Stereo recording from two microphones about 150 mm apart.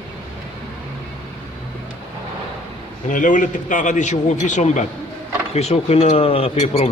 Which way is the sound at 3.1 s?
60° left (ahead or behind).